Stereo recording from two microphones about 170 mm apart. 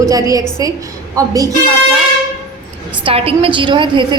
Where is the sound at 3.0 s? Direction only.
35° right (ahead or behind).